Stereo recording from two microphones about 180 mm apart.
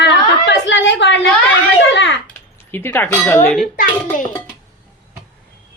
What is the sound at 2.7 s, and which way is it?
Speech, 10° left (ahead or behind).